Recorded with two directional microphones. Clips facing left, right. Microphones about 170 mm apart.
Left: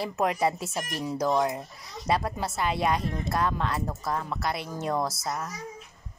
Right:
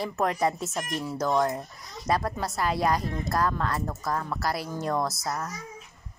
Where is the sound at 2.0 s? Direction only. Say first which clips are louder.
Even; 25° left (ahead or behind).